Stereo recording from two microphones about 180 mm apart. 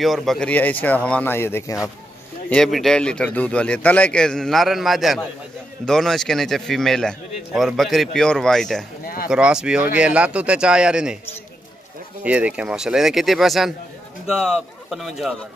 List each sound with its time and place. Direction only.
0.0 s speech: centre (ahead or behind)
2.5 s a man's voice: centre (ahead or behind)
9.0 s a sound: 55° left (ahead or behind)
9.3 s a man's voice: 5° right (ahead or behind)
12.2 s a man's voice: 5° right (ahead or behind)